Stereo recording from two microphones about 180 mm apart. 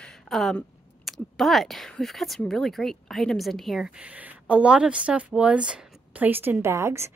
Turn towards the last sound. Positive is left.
turn(degrees=-15)  # may be behind; listen again after turning